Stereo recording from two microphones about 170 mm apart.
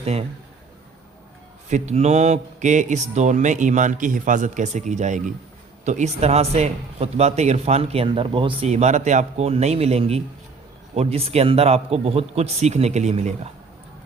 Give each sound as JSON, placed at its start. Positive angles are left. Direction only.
{"t": 0.0, "sound": "a man's voice", "side_deg": -40}
{"t": 1.7, "sound": "a man's voice", "side_deg": -40}